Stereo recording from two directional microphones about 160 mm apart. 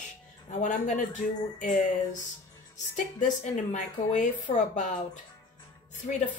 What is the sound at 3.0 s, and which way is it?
A woman's voice, 50° left (ahead or behind).